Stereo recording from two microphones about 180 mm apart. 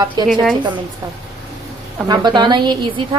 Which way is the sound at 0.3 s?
Centre (ahead or behind).